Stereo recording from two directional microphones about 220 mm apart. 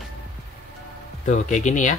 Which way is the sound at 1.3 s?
35° left (ahead or behind).